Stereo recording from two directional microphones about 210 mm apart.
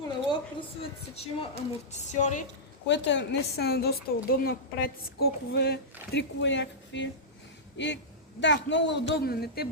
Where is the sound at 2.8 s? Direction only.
60° left (ahead or behind).